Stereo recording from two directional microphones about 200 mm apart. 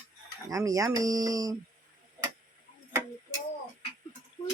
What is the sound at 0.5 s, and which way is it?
Speech, 15° right (ahead or behind).